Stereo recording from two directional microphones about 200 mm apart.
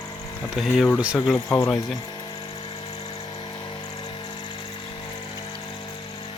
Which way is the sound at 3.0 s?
20° left (ahead or behind).